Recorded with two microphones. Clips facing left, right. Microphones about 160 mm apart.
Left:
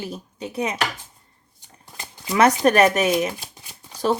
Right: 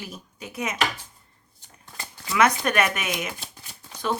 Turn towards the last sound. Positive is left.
turn(degrees=35)  # may be behind; listen again after turning